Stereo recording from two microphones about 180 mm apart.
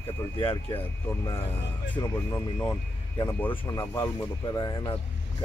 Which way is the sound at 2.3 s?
10° left (ahead or behind).